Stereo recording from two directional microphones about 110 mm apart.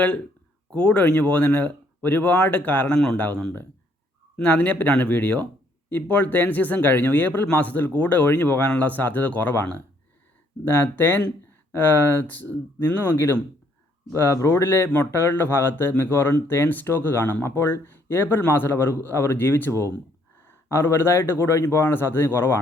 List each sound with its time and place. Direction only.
0.7 s speech: 10° left (ahead or behind)